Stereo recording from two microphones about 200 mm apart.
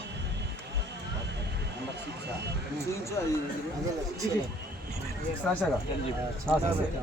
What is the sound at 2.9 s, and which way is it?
Speech, 15° left (ahead or behind).